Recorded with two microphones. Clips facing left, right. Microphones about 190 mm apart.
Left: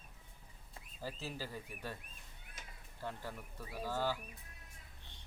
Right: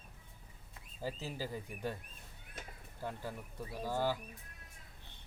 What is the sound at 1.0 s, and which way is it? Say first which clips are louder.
Speech: right 3 dB; 15° right (ahead or behind).